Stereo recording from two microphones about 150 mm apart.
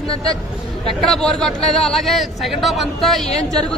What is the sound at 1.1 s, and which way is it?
A man's voice, 5° left (ahead or behind).